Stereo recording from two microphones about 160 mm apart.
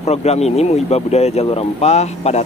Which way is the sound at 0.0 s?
40° left (ahead or behind).